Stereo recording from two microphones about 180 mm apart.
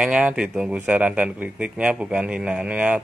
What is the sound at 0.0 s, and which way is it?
Speech, 5° right (ahead or behind).